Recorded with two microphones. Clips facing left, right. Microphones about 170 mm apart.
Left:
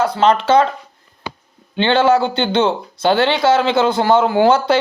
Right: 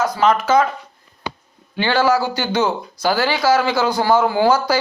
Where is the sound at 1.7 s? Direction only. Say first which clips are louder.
Left 3 dB; 25° left (ahead or behind).